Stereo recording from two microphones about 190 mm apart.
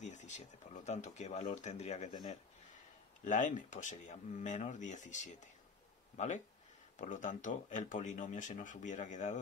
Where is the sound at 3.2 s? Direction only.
40° left (ahead or behind).